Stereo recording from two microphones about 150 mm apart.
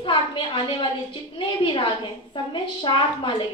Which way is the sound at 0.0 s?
35° left (ahead or behind).